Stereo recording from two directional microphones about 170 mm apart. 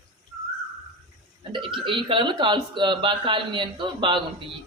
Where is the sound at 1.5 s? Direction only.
30° right (ahead or behind).